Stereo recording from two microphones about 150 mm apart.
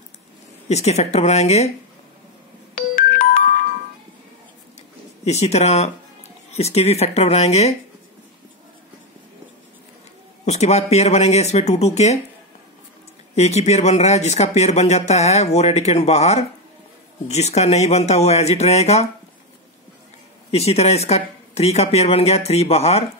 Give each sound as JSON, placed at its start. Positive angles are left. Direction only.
{"t": 0.7, "sound": "speech", "side_deg": 45}
{"t": 2.7, "sound": "music", "side_deg": 65}
{"t": 5.2, "sound": "speech", "side_deg": 45}
{"t": 10.4, "sound": "speech", "side_deg": 50}
{"t": 13.3, "sound": "speech", "side_deg": 45}
{"t": 20.5, "sound": "speech", "side_deg": 45}